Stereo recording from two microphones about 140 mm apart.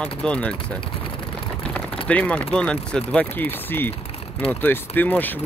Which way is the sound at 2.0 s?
10° left (ahead or behind).